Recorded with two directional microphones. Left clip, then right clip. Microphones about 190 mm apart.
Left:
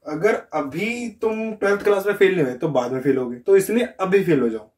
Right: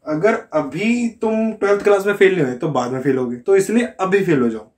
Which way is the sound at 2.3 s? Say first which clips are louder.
Right 2 dB; 5° right (ahead or behind).